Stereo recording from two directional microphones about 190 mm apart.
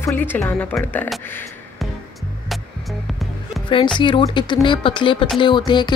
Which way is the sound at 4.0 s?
25° left (ahead or behind).